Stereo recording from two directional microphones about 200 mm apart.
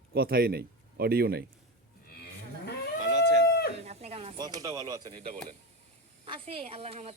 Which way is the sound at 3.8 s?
30° right (ahead or behind).